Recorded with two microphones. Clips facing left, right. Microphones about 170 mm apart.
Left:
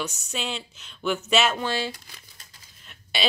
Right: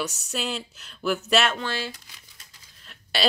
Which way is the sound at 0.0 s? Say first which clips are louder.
Right 1 dB; centre (ahead or behind).